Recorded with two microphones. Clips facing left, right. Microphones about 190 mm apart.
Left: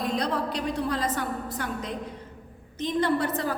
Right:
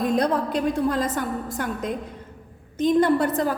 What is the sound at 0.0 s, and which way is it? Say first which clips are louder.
A woman's voice: right 6 dB; 50° right (ahead or behind).